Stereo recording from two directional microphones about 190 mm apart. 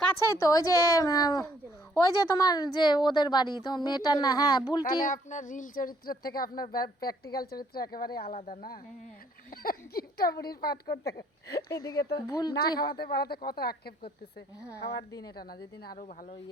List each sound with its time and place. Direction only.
0.2 s a woman's voice: 15° left (ahead or behind)
5.0 s a woman's voice: 40° left (ahead or behind); by 11.8 s 60° left (ahead or behind)
11.8 s a woman's voice: 20° left (ahead or behind)
12.8 s speech: 55° left (ahead or behind)
15.4 s a woman's voice: 50° left (ahead or behind)